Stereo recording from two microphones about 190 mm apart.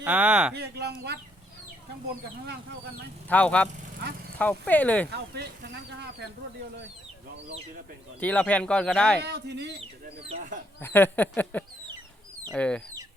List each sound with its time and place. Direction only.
0.0 s speech: 5° right (ahead or behind)
0.5 s speech: 60° right (ahead or behind)
3.2 s speech: 5° left (ahead or behind)
5.1 s speech: 60° right (ahead or behind)
8.2 s speech: 10° left (ahead or behind)
9.2 s speech: 60° right (ahead or behind)
9.8 s speech: 30° right (ahead or behind)
10.8 s speech: 10° left (ahead or behind)